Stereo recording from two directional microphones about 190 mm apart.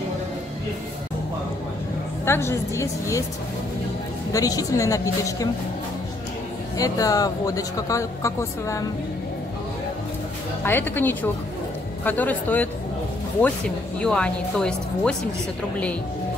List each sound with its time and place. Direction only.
2.2 s speech: 15° left (ahead or behind)
4.3 s speech: 20° left (ahead or behind)
6.8 s speech: 20° left (ahead or behind)
10.6 s speech: 10° left (ahead or behind)
13.9 s speech: 5° left (ahead or behind)